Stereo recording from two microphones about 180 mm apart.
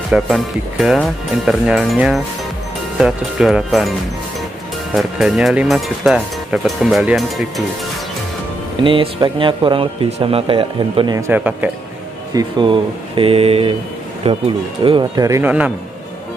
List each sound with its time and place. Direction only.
0.1 s speech: centre (ahead or behind)
4.9 s speech: centre (ahead or behind)
8.8 s a man's voice: 30° right (ahead or behind)
11.1 s speech: 10° right (ahead or behind)
12.4 s a man's voice: 25° right (ahead or behind); by 15.7 s 10° right (ahead or behind)